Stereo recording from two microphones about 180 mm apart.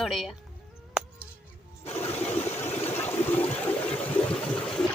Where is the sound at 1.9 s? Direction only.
35° left (ahead or behind).